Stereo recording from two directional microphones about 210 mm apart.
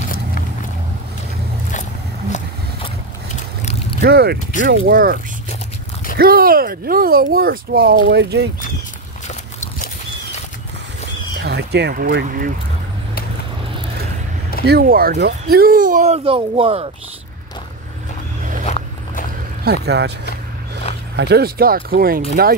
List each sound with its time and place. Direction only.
4.0 s speech: 50° right (ahead or behind)
9.3 s biting: 35° left (ahead or behind)
11.3 s speech: 50° right (ahead or behind)
14.7 s speech: 45° right (ahead or behind); by 16.9 s 25° right (ahead or behind)
18.7 s walk: 35° left (ahead or behind)
19.6 s speech: 50° right (ahead or behind)